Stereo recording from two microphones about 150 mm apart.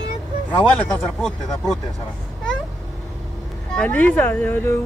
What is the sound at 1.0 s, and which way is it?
Speech, 5° left (ahead or behind).